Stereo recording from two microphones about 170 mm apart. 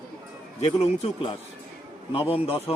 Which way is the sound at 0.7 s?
35° left (ahead or behind).